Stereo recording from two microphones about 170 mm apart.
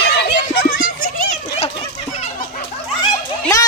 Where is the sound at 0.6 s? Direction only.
60° left (ahead or behind).